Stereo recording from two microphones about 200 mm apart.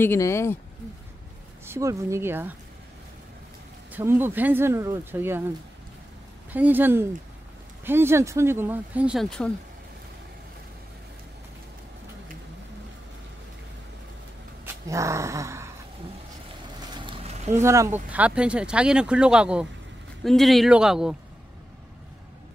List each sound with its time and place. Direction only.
0.0 s speech: 10° left (ahead or behind)
1.7 s speech: 15° right (ahead or behind)
3.9 s speech: 10° right (ahead or behind)
6.5 s speech: 10° right (ahead or behind)
14.9 s speech: 15° right (ahead or behind)
16.9 s a sound: 25° right (ahead or behind)
17.6 s speech: 15° right (ahead or behind)